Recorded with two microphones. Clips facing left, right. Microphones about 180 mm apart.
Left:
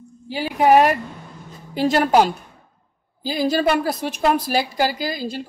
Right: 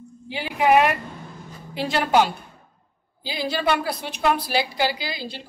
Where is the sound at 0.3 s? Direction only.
35° left (ahead or behind).